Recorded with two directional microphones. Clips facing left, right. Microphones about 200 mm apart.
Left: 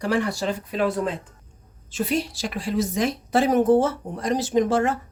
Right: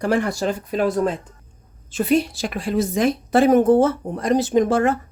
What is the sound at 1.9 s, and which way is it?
A woman's voice, 55° right (ahead or behind).